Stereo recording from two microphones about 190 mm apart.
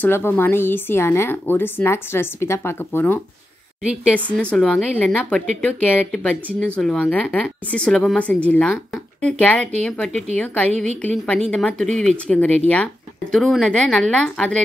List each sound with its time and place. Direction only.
0.0 s a woman's voice: 10° left (ahead or behind)